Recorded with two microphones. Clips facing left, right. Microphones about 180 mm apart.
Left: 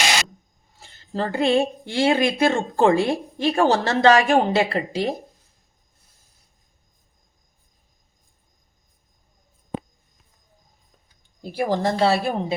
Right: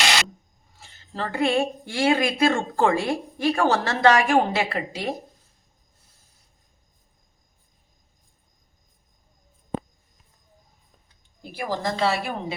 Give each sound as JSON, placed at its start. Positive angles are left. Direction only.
{"t": 0.8, "sound": "speech", "side_deg": 30}
{"t": 11.5, "sound": "speech", "side_deg": 30}